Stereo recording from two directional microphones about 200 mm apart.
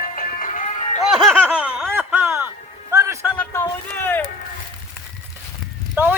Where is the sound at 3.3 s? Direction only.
10° left (ahead or behind).